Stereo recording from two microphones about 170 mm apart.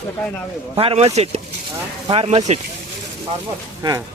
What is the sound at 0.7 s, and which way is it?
Speech, 35° right (ahead or behind).